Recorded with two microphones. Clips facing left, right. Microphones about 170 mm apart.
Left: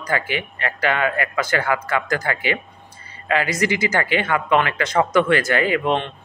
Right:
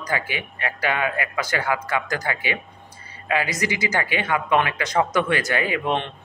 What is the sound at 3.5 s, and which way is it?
Speech, 15° right (ahead or behind).